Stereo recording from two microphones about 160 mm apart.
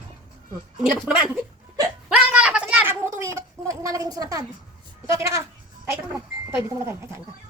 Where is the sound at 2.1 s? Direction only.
5° right (ahead or behind); by 4.4 s 25° right (ahead or behind).